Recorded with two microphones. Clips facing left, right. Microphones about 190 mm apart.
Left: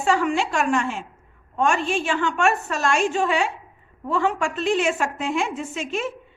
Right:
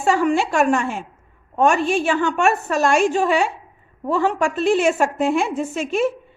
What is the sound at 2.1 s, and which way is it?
Speech, 45° right (ahead or behind).